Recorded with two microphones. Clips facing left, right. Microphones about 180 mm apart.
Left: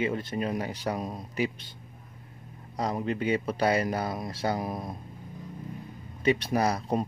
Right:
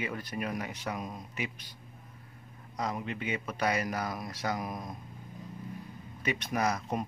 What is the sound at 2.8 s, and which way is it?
A man's voice, 35° left (ahead or behind).